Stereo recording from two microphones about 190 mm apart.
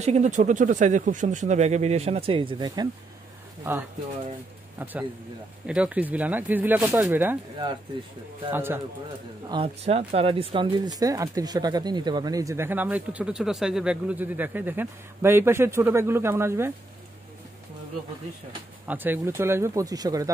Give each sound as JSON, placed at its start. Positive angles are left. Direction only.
{"t": 0.0, "sound": "speech", "side_deg": -35}
{"t": 5.7, "sound": "speech", "side_deg": -5}
{"t": 8.5, "sound": "speech", "side_deg": -10}
{"t": 9.5, "sound": "speech", "side_deg": -30}
{"t": 18.9, "sound": "speech", "side_deg": -10}